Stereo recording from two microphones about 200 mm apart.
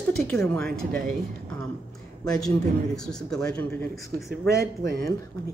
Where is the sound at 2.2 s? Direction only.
5° left (ahead or behind).